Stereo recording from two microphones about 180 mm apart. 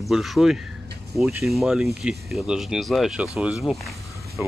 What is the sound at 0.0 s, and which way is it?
Speech, centre (ahead or behind).